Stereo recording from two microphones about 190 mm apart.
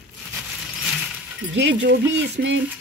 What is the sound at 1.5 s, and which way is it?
Speech, 70° right (ahead or behind).